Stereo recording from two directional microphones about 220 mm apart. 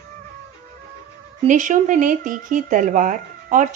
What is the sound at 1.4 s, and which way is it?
Speech, 35° right (ahead or behind).